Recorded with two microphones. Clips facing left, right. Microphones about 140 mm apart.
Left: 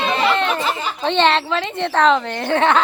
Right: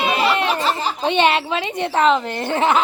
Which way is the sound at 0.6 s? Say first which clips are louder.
Right 2 dB; 35° right (ahead or behind).